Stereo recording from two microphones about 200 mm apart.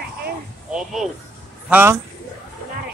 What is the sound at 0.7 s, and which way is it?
A man's voice, 5° right (ahead or behind).